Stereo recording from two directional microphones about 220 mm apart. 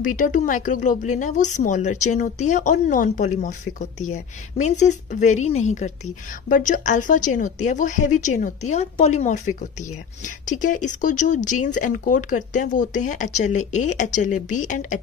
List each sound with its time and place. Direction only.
0.0 s speech: 35° left (ahead or behind)